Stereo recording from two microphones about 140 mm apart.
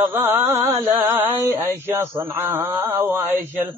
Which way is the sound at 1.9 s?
15° right (ahead or behind).